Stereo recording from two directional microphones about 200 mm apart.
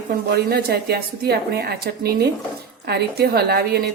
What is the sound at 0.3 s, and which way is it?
Speech, 50° right (ahead or behind).